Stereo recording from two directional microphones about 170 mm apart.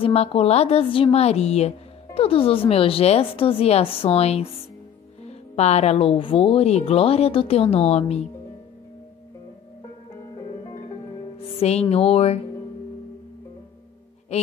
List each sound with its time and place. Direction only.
0.0 s a woman's voice: 35° left (ahead or behind)
5.6 s a woman's voice: 40° left (ahead or behind)
11.6 s a woman's voice: 40° left (ahead or behind)
14.3 s a woman's voice: 35° left (ahead or behind)